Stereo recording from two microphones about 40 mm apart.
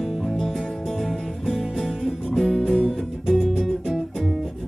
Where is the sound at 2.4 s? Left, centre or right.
Centre.